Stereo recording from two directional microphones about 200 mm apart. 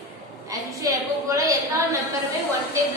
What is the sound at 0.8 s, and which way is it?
A woman's voice, 15° right (ahead or behind).